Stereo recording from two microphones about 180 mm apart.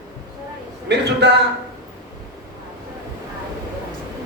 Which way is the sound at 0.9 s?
70° right (ahead or behind).